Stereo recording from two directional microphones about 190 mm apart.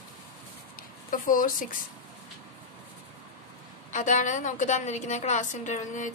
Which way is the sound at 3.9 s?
40° left (ahead or behind).